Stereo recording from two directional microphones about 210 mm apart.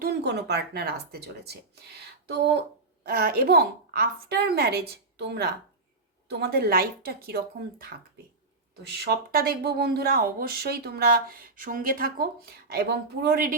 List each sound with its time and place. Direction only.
0.0 s speech: 55° right (ahead or behind)